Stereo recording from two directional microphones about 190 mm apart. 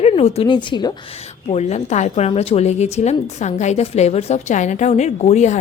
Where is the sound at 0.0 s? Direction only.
30° left (ahead or behind).